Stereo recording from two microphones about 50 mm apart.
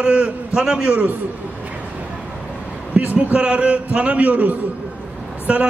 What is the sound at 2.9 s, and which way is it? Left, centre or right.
A man's voice, right.